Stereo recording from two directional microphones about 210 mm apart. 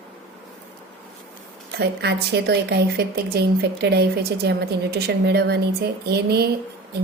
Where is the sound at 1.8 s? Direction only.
50° right (ahead or behind).